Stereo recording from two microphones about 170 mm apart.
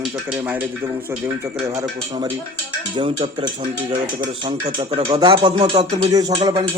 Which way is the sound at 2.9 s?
30° right (ahead or behind).